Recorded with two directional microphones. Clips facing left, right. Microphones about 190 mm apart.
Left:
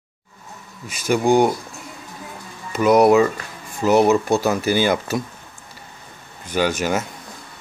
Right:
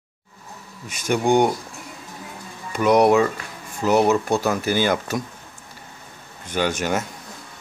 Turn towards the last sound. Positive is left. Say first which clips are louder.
# left 2 dB
turn(degrees=10)  # may be behind; listen again after turning